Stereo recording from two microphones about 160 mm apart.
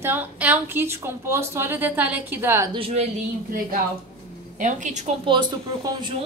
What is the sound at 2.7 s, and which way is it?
Speech, 35° right (ahead or behind).